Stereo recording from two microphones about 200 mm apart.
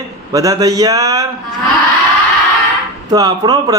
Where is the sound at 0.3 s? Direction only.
15° right (ahead or behind).